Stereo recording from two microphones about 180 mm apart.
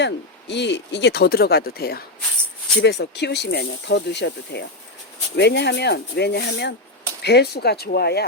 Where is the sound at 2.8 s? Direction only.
70° left (ahead or behind).